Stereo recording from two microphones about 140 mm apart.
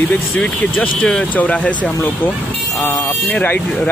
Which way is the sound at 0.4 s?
10° left (ahead or behind).